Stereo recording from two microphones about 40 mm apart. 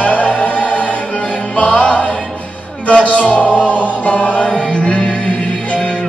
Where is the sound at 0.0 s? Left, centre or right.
Left.